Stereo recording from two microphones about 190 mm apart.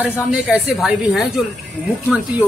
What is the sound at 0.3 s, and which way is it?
A woman's voice, centre (ahead or behind).